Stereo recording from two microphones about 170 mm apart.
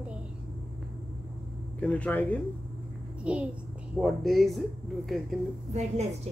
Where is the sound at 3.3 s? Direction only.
5° right (ahead or behind).